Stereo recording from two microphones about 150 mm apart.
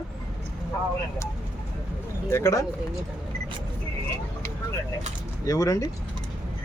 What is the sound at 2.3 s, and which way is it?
Speech, 20° left (ahead or behind).